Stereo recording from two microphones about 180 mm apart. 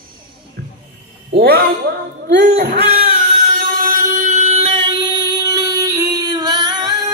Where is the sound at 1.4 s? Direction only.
60° right (ahead or behind).